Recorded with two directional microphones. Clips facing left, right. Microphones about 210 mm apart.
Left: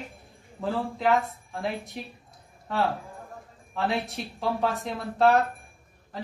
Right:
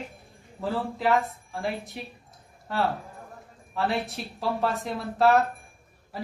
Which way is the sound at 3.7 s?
Centre (ahead or behind).